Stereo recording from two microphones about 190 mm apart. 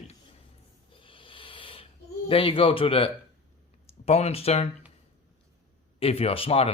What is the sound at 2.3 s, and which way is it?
A man's voice, 30° left (ahead or behind).